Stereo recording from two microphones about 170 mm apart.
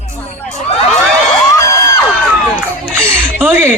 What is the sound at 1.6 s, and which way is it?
Music, 20° left (ahead or behind).